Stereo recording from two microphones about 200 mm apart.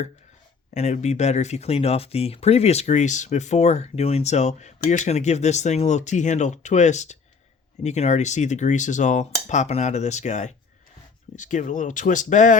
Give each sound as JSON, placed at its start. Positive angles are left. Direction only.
{"t": 0.7, "sound": "speech", "side_deg": 35}